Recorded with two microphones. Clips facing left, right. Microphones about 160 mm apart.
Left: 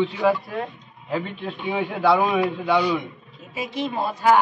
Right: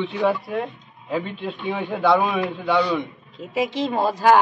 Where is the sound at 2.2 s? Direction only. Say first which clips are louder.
Left 2 dB; 20° left (ahead or behind).